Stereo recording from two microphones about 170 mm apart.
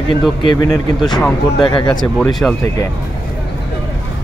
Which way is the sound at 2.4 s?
5° left (ahead or behind).